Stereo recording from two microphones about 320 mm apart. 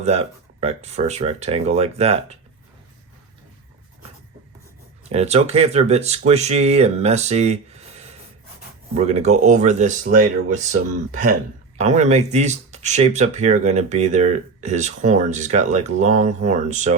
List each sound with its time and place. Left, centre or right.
0.6 s speech: centre
5.0 s speech: centre